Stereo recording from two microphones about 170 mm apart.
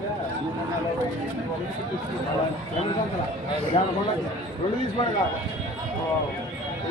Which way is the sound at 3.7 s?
35° left (ahead or behind).